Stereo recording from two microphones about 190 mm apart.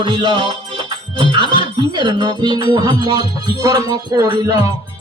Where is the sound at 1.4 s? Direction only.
25° left (ahead or behind).